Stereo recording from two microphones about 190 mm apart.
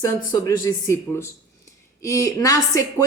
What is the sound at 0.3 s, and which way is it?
Speech, 20° left (ahead or behind).